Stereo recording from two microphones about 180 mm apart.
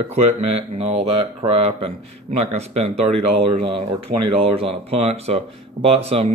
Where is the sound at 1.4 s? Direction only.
30° right (ahead or behind).